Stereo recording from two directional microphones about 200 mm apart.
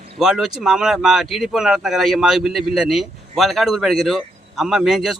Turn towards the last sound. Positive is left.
turn(degrees=0)  # may be behind; listen again after turning